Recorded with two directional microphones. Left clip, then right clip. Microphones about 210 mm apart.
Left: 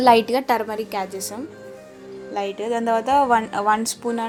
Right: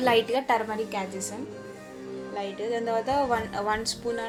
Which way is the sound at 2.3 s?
35° left (ahead or behind).